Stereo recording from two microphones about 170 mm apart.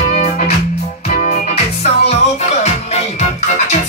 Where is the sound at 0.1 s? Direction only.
55° left (ahead or behind).